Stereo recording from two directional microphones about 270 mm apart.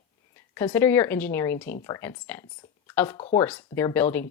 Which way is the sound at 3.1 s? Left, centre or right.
Left.